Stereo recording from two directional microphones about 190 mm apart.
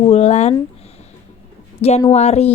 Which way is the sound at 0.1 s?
35° left (ahead or behind).